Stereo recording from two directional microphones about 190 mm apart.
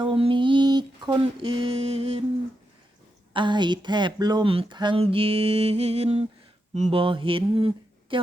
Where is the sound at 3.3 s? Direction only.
25° right (ahead or behind).